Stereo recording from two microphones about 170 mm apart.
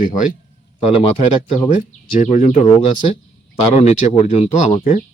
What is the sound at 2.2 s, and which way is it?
Speech, 45° left (ahead or behind).